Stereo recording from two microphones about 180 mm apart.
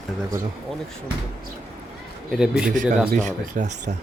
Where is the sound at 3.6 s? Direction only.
50° right (ahead or behind).